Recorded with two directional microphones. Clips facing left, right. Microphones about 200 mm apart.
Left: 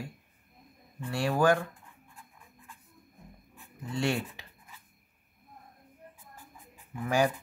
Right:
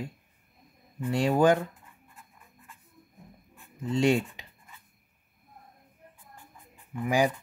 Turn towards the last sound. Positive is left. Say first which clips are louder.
# right 2 dB
turn(degrees=-15)  # may be behind; listen again after turning